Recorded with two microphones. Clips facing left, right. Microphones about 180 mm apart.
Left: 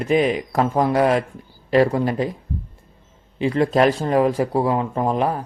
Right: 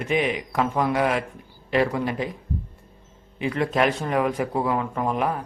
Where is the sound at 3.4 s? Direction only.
30° left (ahead or behind).